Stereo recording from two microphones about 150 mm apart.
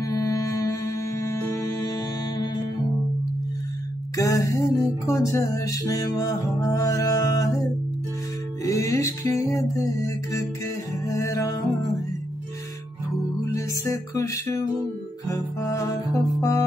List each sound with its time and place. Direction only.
0.0 s music: 20° left (ahead or behind)
4.2 s music: 20° left (ahead or behind)
8.6 s music: 20° left (ahead or behind)
13.4 s music: 20° left (ahead or behind)